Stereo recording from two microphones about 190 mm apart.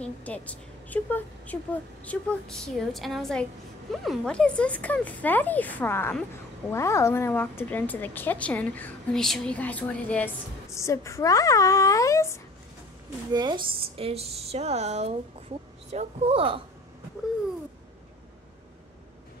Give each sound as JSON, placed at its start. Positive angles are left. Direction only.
{"t": 0.0, "sound": "a woman's voice", "side_deg": 5}
{"t": 13.3, "sound": "speech", "side_deg": -25}